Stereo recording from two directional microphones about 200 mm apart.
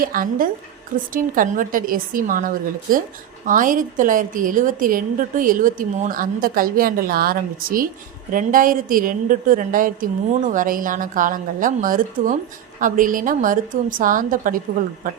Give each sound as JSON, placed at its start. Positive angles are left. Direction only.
{"t": 0.0, "sound": "a woman's voice", "side_deg": -45}